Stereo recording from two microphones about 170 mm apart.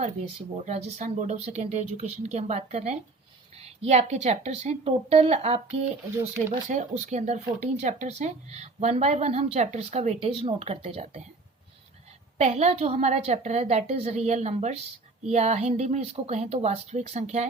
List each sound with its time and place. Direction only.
0.6 s speech: 45° right (ahead or behind)
12.4 s speech: 40° right (ahead or behind)